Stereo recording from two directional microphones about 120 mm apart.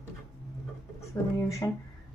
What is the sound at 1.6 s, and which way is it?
Speech, 30° left (ahead or behind).